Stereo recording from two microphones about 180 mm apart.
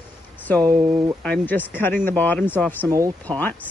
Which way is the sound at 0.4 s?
10° left (ahead or behind).